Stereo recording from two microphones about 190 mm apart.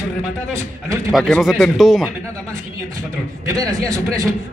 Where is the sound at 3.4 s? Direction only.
20° right (ahead or behind).